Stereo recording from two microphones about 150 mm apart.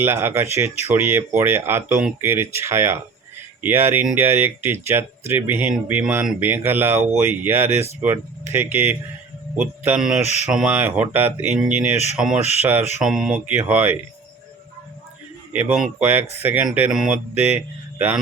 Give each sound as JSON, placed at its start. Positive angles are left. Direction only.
{"t": 0.0, "sound": "speech", "side_deg": -15}
{"t": 12.1, "sound": "mantra", "side_deg": -5}
{"t": 13.7, "sound": "speech", "side_deg": -10}
{"t": 15.5, "sound": "speech", "side_deg": -5}
{"t": 16.6, "sound": "mantra", "side_deg": -5}
{"t": 17.9, "sound": "speech", "side_deg": -10}